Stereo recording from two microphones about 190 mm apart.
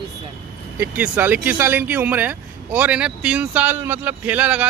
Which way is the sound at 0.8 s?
10° right (ahead or behind).